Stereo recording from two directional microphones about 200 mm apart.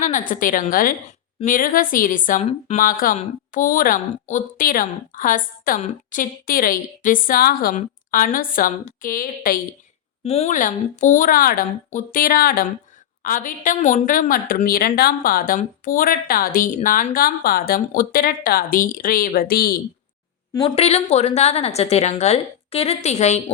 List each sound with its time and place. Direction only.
0.0 s a woman's voice: 40° left (ahead or behind)
10.2 s a woman's voice: 30° left (ahead or behind); by 19.8 s 50° left (ahead or behind)
20.7 s a woman's voice: 30° left (ahead or behind)